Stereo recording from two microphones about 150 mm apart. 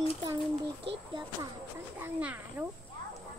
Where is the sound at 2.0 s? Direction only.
10° right (ahead or behind).